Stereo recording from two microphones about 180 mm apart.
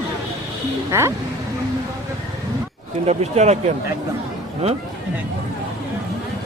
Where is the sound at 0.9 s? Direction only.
15° right (ahead or behind).